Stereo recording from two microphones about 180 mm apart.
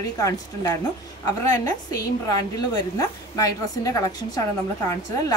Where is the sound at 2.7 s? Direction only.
20° left (ahead or behind).